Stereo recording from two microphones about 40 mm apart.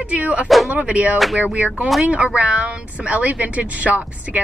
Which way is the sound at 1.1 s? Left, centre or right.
Centre.